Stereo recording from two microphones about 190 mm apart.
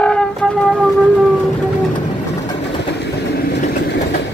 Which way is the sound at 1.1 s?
Centre (ahead or behind).